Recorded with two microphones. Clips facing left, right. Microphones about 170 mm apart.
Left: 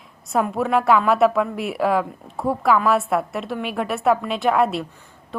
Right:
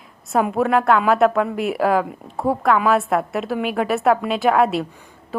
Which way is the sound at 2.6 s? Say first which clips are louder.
Even; centre (ahead or behind).